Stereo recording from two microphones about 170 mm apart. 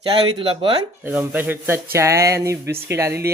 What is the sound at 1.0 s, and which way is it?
Speech, 10° right (ahead or behind).